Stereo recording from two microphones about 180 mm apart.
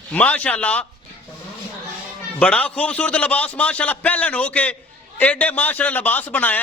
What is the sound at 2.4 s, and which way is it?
A man's voice, 5° left (ahead or behind).